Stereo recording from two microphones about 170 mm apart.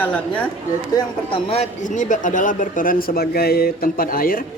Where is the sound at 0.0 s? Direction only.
10° left (ahead or behind).